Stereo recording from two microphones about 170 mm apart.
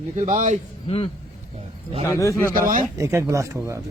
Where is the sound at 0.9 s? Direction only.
35° left (ahead or behind).